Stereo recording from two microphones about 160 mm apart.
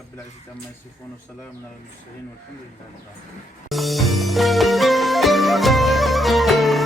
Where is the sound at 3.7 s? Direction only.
Centre (ahead or behind).